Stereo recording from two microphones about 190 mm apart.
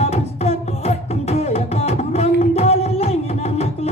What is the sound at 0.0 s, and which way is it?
Music, 35° left (ahead or behind).